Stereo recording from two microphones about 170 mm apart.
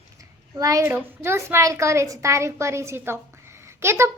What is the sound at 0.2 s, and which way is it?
A child's voice, 20° right (ahead or behind).